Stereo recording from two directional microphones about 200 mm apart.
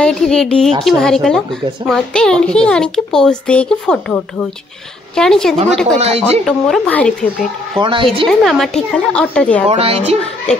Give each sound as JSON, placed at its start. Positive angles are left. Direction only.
{"t": 0.0, "sound": "a child's voice", "side_deg": 5}
{"t": 5.9, "sound": "speech", "side_deg": -30}
{"t": 6.4, "sound": "a child's voice", "side_deg": 5}
{"t": 7.8, "sound": "a woman's voice", "side_deg": -25}
{"t": 8.3, "sound": "a child's voice", "side_deg": 0}
{"t": 9.7, "sound": "a woman's voice", "side_deg": -30}